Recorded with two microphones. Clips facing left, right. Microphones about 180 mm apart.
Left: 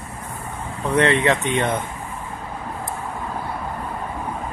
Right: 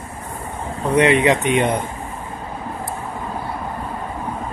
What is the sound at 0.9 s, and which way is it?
Speech, 15° right (ahead or behind).